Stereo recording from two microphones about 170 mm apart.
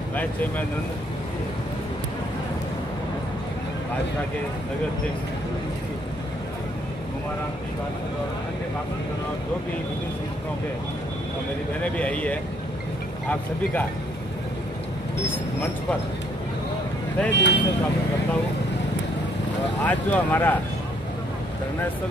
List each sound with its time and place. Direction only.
0.1 s speech: 10° left (ahead or behind)
11.8 s speech: 10° left (ahead or behind)
15.2 s speech: 10° left (ahead or behind)
17.3 s speech: 90° left
19.8 s speech: 10° left (ahead or behind)